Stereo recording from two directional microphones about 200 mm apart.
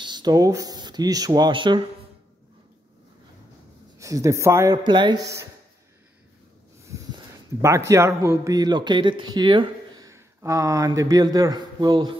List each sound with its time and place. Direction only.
0.0 s speech: 20° right (ahead or behind)
4.0 s a man's voice: 15° right (ahead or behind)
6.9 s a sound: 15° right (ahead or behind)
7.6 s a man's voice: 15° right (ahead or behind)